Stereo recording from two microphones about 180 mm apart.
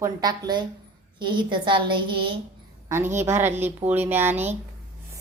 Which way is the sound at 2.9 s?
15° right (ahead or behind).